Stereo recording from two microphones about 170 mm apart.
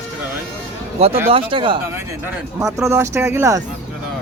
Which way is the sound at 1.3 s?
30° right (ahead or behind).